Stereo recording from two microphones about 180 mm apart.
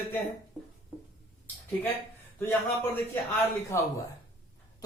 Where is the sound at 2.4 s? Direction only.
15° left (ahead or behind).